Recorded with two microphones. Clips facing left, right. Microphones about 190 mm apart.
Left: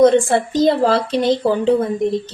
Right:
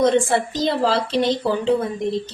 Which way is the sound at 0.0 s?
50° left (ahead or behind).